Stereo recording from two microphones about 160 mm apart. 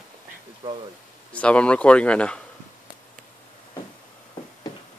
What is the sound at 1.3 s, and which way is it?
Speech, 10° left (ahead or behind).